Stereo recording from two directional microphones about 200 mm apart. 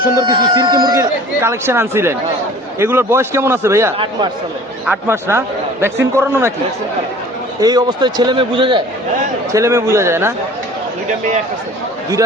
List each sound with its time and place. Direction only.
0.3 s speech: 20° right (ahead or behind)
3.9 s speech: 25° right (ahead or behind)
4.9 s speech: 10° right (ahead or behind)
7.6 s speech: 20° right (ahead or behind)